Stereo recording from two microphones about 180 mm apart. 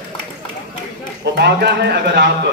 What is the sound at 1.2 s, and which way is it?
A man's voice, 70° right (ahead or behind).